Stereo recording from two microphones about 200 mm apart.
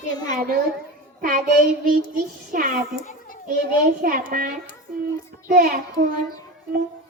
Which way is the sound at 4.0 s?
45° right (ahead or behind).